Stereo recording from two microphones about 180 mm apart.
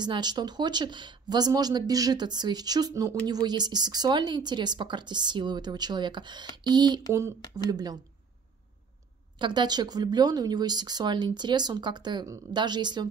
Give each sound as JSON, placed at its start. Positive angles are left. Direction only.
{"t": 0.0, "sound": "speech", "side_deg": -25}
{"t": 9.4, "sound": "speech", "side_deg": -25}